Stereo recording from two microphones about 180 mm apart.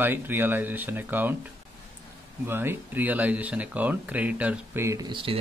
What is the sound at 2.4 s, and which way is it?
Speech, 10° right (ahead or behind).